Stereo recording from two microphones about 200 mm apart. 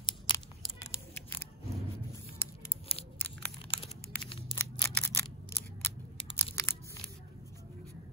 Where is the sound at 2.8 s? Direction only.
30° left (ahead or behind).